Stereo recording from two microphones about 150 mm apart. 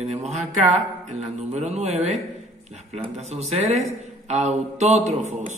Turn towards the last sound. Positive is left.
turn(degrees=-50)  # may be behind; listen again after turning